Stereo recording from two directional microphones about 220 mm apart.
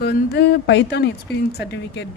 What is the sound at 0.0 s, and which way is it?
A woman's voice, 50° left (ahead or behind).